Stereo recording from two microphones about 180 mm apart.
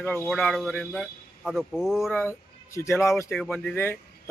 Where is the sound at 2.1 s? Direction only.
10° left (ahead or behind).